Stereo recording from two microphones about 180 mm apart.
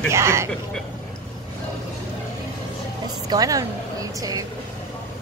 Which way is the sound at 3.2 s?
20° right (ahead or behind).